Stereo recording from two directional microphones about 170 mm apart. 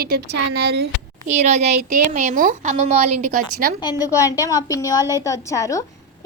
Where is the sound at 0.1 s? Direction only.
75° right (ahead or behind).